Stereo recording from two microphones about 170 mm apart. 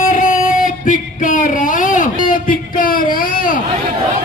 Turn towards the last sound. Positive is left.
turn(degrees=55)  # may be behind; listen again after turning